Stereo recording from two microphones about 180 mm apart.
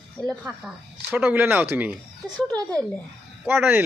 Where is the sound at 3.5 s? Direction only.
10° right (ahead or behind).